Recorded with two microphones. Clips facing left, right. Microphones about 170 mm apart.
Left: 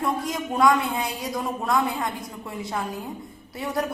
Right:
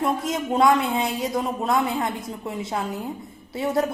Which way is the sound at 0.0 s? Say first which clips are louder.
Right 2 dB; 25° right (ahead or behind).